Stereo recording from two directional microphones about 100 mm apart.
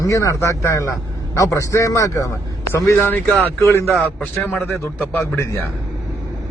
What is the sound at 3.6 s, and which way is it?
Speech, 25° left (ahead or behind).